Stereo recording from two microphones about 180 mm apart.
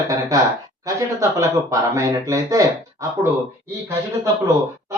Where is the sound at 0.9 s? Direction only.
15° right (ahead or behind).